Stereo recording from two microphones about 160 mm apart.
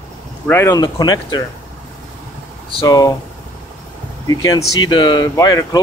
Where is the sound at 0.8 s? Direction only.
25° left (ahead or behind).